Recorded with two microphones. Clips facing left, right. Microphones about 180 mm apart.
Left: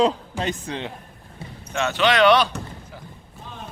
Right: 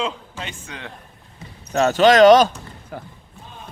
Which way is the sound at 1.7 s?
40° right (ahead or behind).